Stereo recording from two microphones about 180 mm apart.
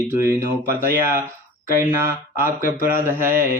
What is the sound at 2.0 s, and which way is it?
Speech, 15° right (ahead or behind).